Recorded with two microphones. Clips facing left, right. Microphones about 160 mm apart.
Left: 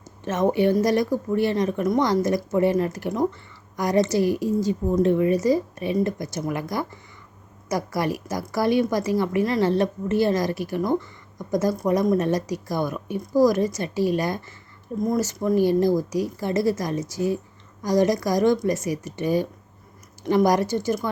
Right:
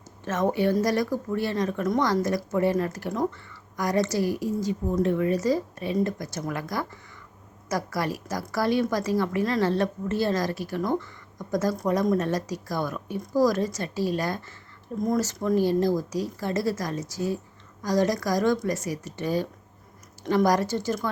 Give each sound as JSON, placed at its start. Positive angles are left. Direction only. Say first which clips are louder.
{"t": 0.3, "sound": "speech", "louder": "left 4 dB", "side_deg": 20}
{"t": 5.1, "sound": "a woman's voice", "louder": "left 4 dB", "side_deg": 15}